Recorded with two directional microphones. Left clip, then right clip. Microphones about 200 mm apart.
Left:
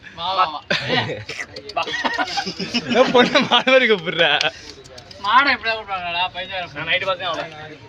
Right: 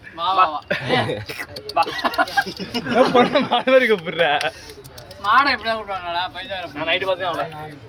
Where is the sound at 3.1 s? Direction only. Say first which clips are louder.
Left 2 dB; 35° left (ahead or behind).